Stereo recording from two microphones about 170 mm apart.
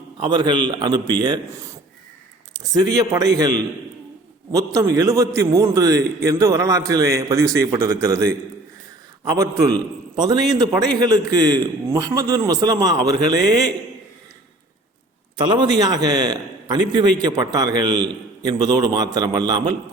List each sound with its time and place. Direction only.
0.3 s a man's voice: 25° right (ahead or behind)
2.7 s a man's voice: 20° right (ahead or behind)
4.5 s a man's voice: 20° right (ahead or behind)
9.3 s a man's voice: 20° right (ahead or behind)
15.4 s a man's voice: 25° right (ahead or behind)